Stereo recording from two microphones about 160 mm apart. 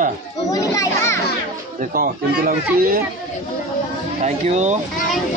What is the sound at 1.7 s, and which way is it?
Speech, 65° right (ahead or behind).